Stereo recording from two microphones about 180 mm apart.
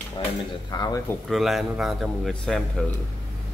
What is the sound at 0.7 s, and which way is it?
Speech, 25° left (ahead or behind).